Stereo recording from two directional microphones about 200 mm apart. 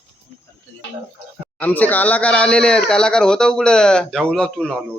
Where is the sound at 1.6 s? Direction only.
10° left (ahead or behind).